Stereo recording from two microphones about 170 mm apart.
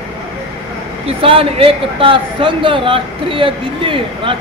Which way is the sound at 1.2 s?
35° right (ahead or behind).